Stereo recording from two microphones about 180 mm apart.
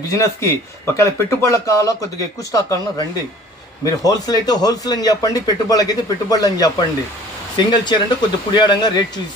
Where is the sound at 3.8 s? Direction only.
20° left (ahead or behind).